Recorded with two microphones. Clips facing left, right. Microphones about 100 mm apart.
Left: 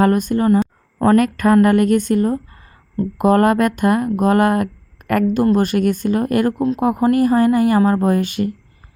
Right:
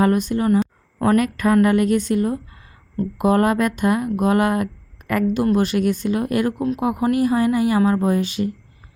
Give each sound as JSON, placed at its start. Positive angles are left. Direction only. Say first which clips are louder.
{"t": 0.0, "sound": "speech", "louder": "left 3 dB", "side_deg": 50}